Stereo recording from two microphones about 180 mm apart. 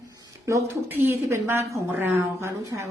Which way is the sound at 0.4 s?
15° right (ahead or behind).